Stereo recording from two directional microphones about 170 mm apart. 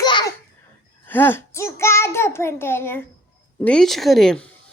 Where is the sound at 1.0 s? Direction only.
10° left (ahead or behind).